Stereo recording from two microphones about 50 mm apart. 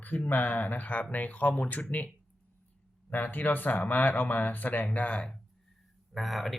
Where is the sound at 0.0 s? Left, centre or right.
Left.